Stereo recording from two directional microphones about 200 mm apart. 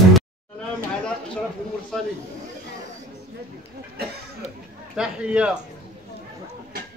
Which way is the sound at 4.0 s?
50° right (ahead or behind).